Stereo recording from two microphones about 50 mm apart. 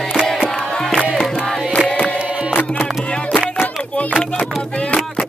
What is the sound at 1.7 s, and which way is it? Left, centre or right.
Choir, left.